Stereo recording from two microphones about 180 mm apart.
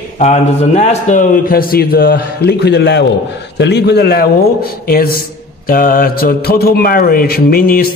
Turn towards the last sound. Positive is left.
turn(degrees=55)  # may be behind; listen again after turning